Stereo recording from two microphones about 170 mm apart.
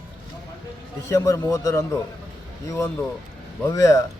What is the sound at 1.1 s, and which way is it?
Speech, 20° left (ahead or behind).